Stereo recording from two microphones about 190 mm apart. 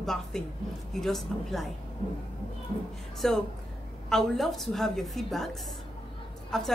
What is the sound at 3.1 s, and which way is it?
A woman's voice, centre (ahead or behind).